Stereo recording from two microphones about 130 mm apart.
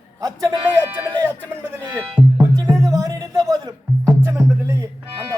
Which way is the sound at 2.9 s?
25° right (ahead or behind).